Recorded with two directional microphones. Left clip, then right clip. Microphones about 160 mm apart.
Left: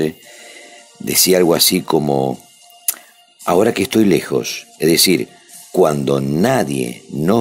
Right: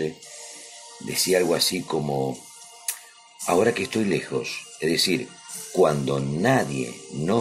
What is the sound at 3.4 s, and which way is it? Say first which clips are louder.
Speech: left 7 dB; 35° left (ahead or behind).